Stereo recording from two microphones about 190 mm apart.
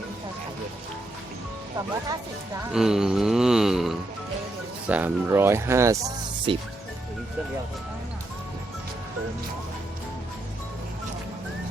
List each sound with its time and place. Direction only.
2.7 s a sound: centre (ahead or behind)
4.9 s speech: 10° right (ahead or behind)
6.5 s speech: 25° right (ahead or behind)